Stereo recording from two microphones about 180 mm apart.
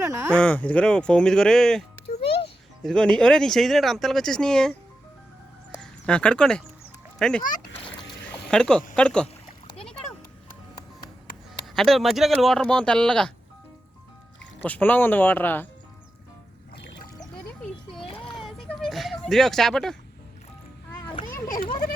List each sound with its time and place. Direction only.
0.0 s speech: 15° right (ahead or behind)
0.3 s speech: 5° left (ahead or behind)
2.2 s music: 30° left (ahead or behind)
2.8 s speech: 5° left (ahead or behind)
5.7 s speech: 5° left (ahead or behind)
8.3 s a sound: 5° left (ahead or behind)
9.0 s speech: 5° left (ahead or behind)
11.7 s speech: centre (ahead or behind)
14.6 s speech: 10° left (ahead or behind)
16.7 s music: 65° left (ahead or behind)
17.6 s a sound: centre (ahead or behind)